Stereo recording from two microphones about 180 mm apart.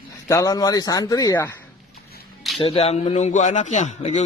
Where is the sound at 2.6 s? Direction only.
35° left (ahead or behind).